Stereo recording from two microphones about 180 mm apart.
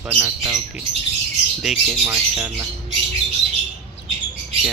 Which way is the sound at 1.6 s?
5° right (ahead or behind).